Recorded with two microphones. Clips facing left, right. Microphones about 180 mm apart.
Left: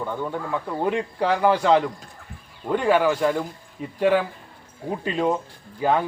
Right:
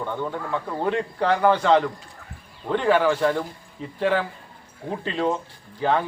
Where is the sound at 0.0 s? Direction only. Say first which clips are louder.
Even; 5° left (ahead or behind).